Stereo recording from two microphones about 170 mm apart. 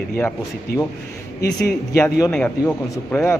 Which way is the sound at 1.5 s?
10° left (ahead or behind).